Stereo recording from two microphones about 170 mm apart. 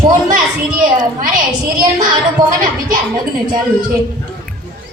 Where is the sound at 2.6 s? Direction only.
50° right (ahead or behind).